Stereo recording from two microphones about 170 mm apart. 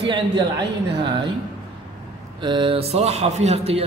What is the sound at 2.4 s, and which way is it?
A man's voice, 30° right (ahead or behind).